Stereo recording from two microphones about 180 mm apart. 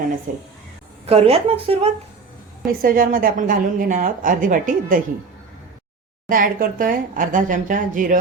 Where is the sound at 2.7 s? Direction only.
55° right (ahead or behind).